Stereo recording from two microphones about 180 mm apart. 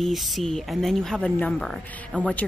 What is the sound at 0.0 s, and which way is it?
A woman's voice, centre (ahead or behind).